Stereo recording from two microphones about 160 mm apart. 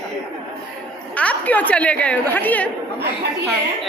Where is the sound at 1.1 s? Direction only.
10° left (ahead or behind).